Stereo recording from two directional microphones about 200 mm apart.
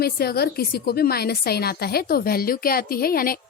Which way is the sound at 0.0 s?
50° left (ahead or behind).